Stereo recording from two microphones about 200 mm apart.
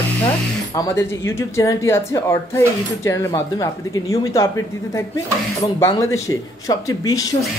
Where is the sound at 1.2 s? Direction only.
15° left (ahead or behind).